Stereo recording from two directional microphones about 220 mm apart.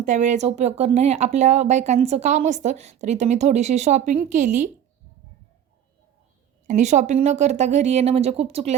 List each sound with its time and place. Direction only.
0.0 s speech: 35° right (ahead or behind)
6.7 s speech: 35° right (ahead or behind)